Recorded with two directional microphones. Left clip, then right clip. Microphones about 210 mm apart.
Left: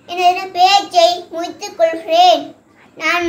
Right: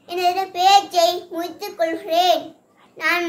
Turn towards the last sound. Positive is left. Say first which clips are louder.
# left 4 dB
turn(degrees=-20)  # may be behind; listen again after turning